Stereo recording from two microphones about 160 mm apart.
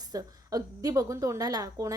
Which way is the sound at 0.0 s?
25° right (ahead or behind).